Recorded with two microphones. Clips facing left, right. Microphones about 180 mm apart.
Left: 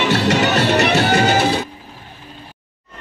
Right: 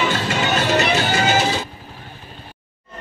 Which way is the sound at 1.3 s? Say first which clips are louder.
Left 3 dB; 60° left (ahead or behind).